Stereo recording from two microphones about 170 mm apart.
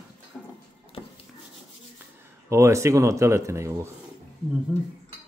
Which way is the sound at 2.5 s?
15° right (ahead or behind).